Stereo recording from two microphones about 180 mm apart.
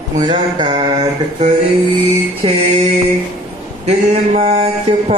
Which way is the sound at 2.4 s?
25° right (ahead or behind).